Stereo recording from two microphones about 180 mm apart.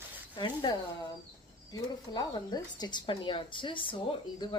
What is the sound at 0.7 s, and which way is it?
Speech, 25° left (ahead or behind).